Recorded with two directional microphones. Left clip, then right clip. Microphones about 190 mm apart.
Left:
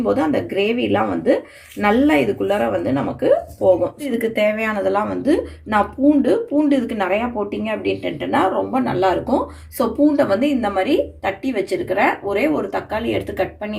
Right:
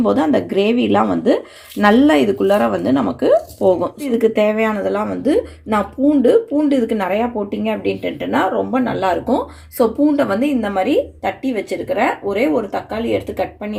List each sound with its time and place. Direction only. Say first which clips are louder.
0.0 s speech: right 3 dB; 45° right (ahead or behind)